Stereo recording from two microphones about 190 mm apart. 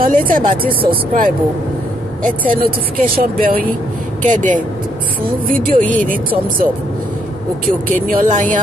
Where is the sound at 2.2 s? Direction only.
45° right (ahead or behind).